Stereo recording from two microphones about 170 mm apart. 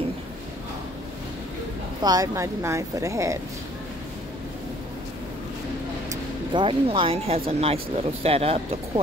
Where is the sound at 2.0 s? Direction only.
20° right (ahead or behind).